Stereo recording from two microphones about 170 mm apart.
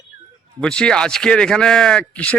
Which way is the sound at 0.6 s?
5° left (ahead or behind).